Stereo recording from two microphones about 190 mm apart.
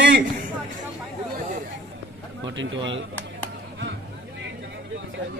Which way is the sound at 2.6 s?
75° right (ahead or behind).